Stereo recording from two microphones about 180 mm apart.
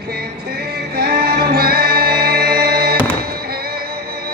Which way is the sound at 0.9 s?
60° right (ahead or behind).